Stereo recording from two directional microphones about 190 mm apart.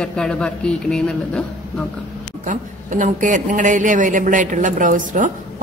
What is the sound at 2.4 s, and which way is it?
A man's voice, 40° right (ahead or behind).